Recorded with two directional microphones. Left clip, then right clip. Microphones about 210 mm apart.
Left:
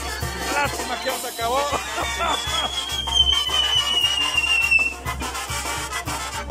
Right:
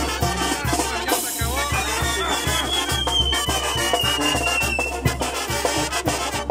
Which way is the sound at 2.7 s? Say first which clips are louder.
Left 2 dB; 55° right (ahead or behind).